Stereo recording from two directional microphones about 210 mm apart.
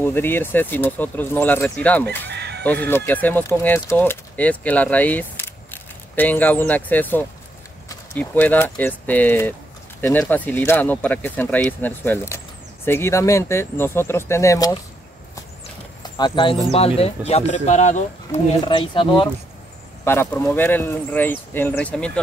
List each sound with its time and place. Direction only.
0.0 s speech: 10° left (ahead or behind)
2.2 s chicken: 55° right (ahead or behind)
2.6 s speech: 5° left (ahead or behind)
16.0 s speech: 20° left (ahead or behind)
18.7 s speech: 25° left (ahead or behind)
20.1 s speech: 10° left (ahead or behind)